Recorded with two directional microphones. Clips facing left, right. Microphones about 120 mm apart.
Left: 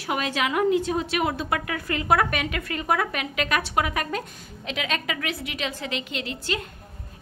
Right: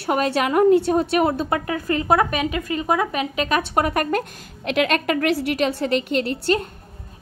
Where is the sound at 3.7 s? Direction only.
45° right (ahead or behind).